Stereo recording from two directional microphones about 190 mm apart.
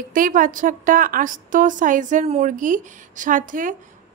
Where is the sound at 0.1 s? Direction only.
45° right (ahead or behind).